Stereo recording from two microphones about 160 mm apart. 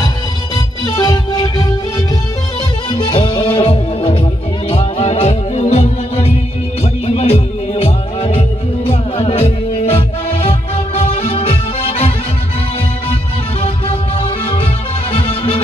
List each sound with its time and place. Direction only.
0.8 s music: 25° left (ahead or behind)
13.6 s music: 35° left (ahead or behind)